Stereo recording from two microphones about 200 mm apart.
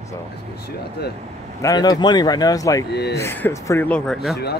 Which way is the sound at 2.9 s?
55° left (ahead or behind).